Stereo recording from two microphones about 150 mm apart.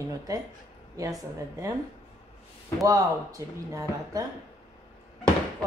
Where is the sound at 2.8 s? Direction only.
20° right (ahead or behind).